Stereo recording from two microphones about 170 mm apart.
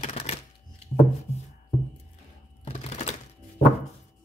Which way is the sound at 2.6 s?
40° left (ahead or behind).